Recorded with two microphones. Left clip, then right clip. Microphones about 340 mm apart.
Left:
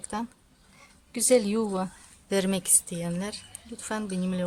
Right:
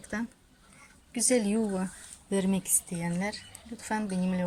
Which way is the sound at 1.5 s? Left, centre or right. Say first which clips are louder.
Left 3 dB; left.